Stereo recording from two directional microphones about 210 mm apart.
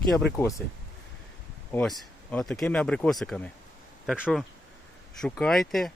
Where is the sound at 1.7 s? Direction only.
5° left (ahead or behind).